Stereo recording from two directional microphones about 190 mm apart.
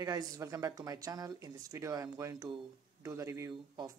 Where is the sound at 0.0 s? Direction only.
20° right (ahead or behind).